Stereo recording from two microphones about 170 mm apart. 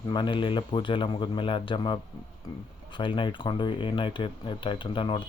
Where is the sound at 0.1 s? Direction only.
25° left (ahead or behind).